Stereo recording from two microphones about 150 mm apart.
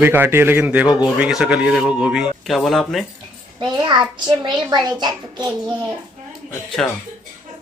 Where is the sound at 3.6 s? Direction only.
30° right (ahead or behind).